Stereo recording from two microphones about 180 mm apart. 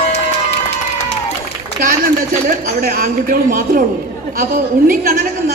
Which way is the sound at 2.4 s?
55° right (ahead or behind).